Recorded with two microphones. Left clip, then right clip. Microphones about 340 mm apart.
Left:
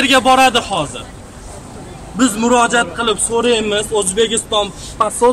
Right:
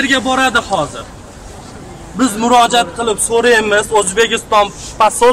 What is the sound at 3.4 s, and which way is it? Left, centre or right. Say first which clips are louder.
Speech: right 6 dB; right.